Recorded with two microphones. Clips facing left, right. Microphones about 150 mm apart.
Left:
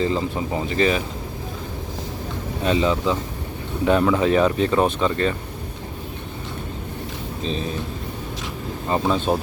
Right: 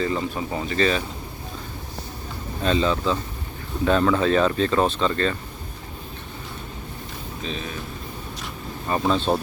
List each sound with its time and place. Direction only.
0.0 s speech: 20° left (ahead or behind)
2.6 s speech: 15° left (ahead or behind)
7.4 s speech: 35° left (ahead or behind)
9.0 s speech: 15° left (ahead or behind)